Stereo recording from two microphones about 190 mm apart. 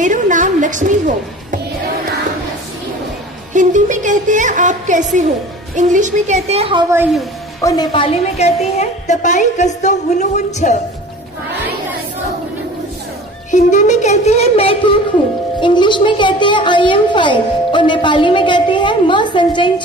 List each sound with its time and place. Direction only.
0.0 s music: 40° right (ahead or behind)
3.5 s a woman's voice: 40° right (ahead or behind)
7.6 s a woman's voice: 20° left (ahead or behind); by 10.8 s 40° left (ahead or behind)
13.5 s a woman's voice: 40° left (ahead or behind); by 19.7 s 25° left (ahead or behind)